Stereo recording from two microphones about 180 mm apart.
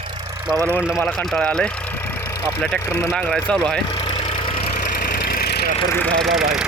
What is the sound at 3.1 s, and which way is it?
Speech, centre (ahead or behind).